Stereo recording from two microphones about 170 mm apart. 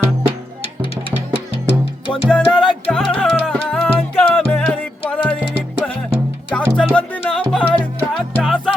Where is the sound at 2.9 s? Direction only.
5° left (ahead or behind).